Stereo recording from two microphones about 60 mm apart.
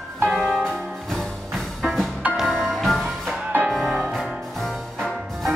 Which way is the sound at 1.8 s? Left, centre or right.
Centre.